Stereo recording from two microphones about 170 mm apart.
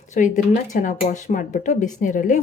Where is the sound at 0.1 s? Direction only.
45° left (ahead or behind).